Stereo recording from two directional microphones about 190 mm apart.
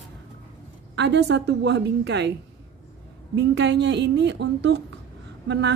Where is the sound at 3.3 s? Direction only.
65° right (ahead or behind).